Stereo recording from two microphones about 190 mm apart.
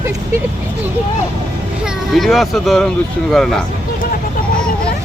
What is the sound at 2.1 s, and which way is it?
Speech, centre (ahead or behind).